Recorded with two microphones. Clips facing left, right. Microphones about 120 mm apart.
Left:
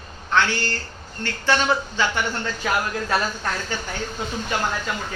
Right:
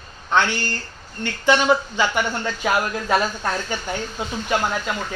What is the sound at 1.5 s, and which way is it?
Speech, 15° right (ahead or behind).